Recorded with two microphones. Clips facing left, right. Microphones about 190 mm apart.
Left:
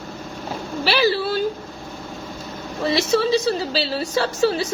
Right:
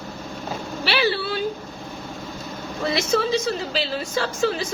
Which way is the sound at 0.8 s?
40° left (ahead or behind).